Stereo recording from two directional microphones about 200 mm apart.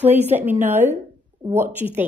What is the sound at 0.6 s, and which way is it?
A woman's voice, 10° right (ahead or behind).